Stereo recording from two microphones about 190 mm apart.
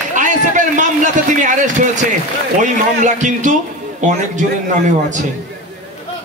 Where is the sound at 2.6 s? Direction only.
40° right (ahead or behind).